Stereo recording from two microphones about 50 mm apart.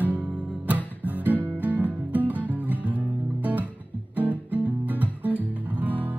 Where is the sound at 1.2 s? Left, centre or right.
Right.